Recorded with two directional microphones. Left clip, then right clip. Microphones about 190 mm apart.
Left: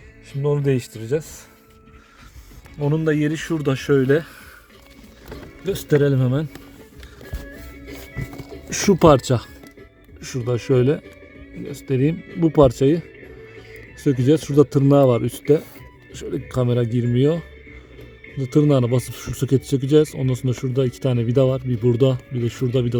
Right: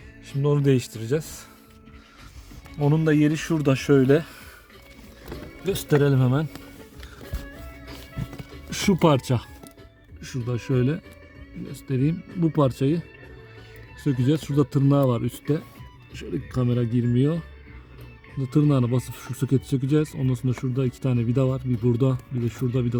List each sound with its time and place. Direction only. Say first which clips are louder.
0.4 s speech: left 1 dB; 15° right (ahead or behind)
2.8 s speech: left 1 dB; 15° right (ahead or behind)
5.7 s speech: left 3 dB; 15° right (ahead or behind)
9.0 s speech: left 8 dB; 15° left (ahead or behind)
14.0 s speech: left 7 dB; 15° left (ahead or behind)
16.1 s speech: left 6 dB; 30° left (ahead or behind)